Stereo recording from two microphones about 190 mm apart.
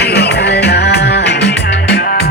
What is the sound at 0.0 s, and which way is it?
Music, 60° left (ahead or behind).